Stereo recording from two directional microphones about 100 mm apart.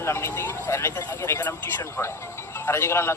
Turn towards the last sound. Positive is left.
turn(degrees=25)  # may be behind; listen again after turning